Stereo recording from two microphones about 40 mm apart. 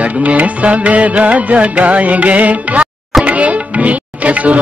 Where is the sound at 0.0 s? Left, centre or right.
Right.